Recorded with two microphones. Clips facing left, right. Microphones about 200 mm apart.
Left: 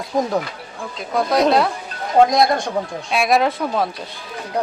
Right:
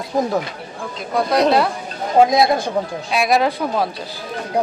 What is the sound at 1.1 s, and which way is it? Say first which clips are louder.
Speech: even; centre (ahead or behind).